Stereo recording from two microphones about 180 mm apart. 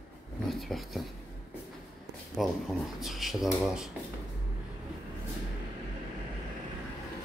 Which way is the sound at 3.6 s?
Centre (ahead or behind).